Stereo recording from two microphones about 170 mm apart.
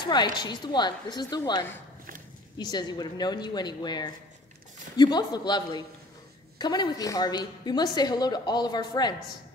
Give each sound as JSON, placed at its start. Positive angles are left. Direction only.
{"t": 0.0, "sound": "a woman's voice", "side_deg": 25}